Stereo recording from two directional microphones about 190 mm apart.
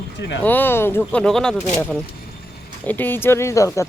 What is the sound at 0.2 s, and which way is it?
Speech, 70° left (ahead or behind).